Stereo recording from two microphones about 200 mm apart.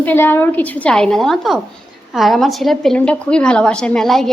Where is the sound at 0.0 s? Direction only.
10° left (ahead or behind).